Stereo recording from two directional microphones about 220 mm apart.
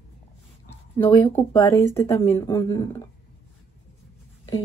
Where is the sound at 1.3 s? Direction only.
10° left (ahead or behind).